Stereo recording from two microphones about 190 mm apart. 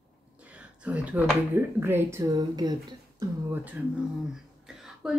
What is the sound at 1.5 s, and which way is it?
A woman's voice, 10° right (ahead or behind).